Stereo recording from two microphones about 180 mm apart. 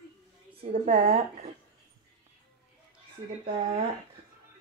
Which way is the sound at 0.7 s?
40° right (ahead or behind).